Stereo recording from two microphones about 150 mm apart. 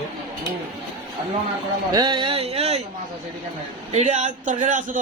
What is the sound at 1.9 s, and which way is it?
Speech, 30° right (ahead or behind).